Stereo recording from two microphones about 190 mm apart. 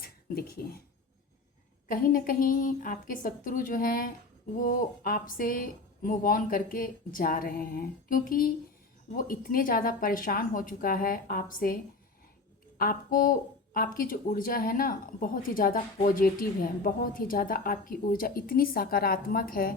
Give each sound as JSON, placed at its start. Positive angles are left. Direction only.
{"t": 0.0, "sound": "speech", "side_deg": 50}
{"t": 1.9, "sound": "a woman's voice", "side_deg": 50}